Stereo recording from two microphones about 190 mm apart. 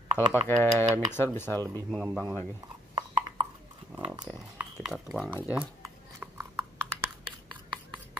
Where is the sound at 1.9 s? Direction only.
5° right (ahead or behind).